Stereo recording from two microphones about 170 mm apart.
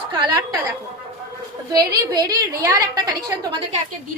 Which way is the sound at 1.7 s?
25° right (ahead or behind).